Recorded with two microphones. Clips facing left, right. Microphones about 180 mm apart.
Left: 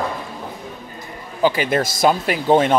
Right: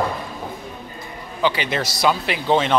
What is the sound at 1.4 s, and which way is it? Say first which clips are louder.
Speech: left 4 dB; 45° left (ahead or behind).